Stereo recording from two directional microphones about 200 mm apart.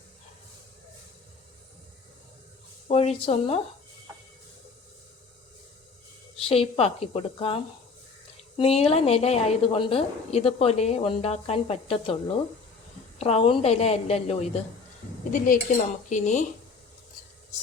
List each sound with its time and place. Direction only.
2.8 s a woman's voice: 30° left (ahead or behind)
6.3 s a woman's voice: 30° left (ahead or behind)
15.3 s dishes: 45° left (ahead or behind)
16.0 s a woman's voice: 35° left (ahead or behind)